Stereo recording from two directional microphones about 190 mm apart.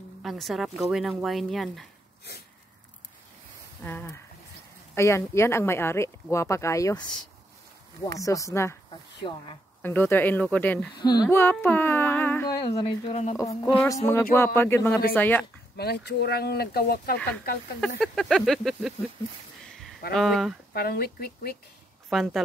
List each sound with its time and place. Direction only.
0.2 s speech: centre (ahead or behind)
3.8 s speech: 10° left (ahead or behind)
9.8 s speech: 10° left (ahead or behind)
11.0 s speech: 20° left (ahead or behind)
12.4 s speech: 25° left (ahead or behind)
14.0 s speech: 15° left (ahead or behind)
15.7 s speech: 60° left (ahead or behind)
17.7 s speech: centre (ahead or behind)
20.2 s speech: centre (ahead or behind)
20.7 s speech: 55° left (ahead or behind)
22.1 s speech: centre (ahead or behind)